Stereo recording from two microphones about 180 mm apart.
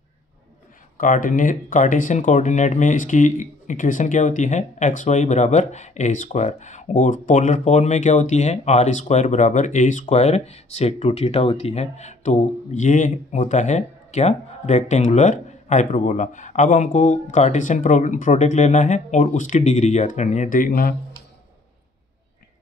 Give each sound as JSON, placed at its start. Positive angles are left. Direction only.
{"t": 0.9, "sound": "speech", "side_deg": 45}